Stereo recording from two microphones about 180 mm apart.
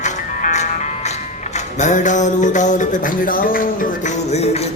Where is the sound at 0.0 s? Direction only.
40° left (ahead or behind).